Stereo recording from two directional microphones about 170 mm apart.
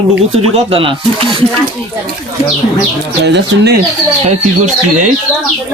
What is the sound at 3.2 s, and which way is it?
Speech, 80° right.